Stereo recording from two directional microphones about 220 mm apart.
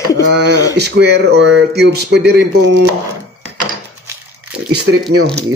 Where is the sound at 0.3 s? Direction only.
50° right (ahead or behind).